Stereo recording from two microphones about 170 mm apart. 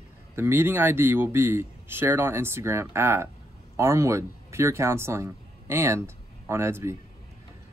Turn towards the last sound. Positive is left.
turn(degrees=-15)  # may be behind; listen again after turning